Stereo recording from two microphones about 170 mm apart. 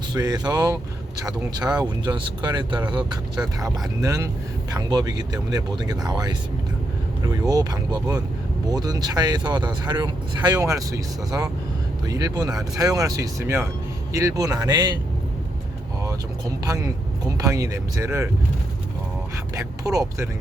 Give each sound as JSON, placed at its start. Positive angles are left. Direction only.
{"t": 0.1, "sound": "speech", "side_deg": -25}
{"t": 7.4, "sound": "speech", "side_deg": -20}
{"t": 16.6, "sound": "speech", "side_deg": -20}
{"t": 19.5, "sound": "speech", "side_deg": -20}